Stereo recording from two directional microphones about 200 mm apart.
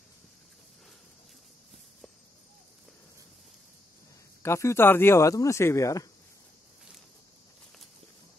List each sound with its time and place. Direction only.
4.4 s speech: 15° left (ahead or behind)